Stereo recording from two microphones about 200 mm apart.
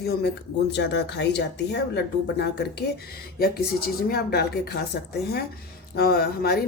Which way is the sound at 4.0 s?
50° left (ahead or behind).